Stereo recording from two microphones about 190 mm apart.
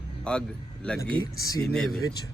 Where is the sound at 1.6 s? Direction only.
Centre (ahead or behind).